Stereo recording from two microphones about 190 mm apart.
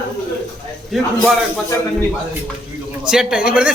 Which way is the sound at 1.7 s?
15° left (ahead or behind).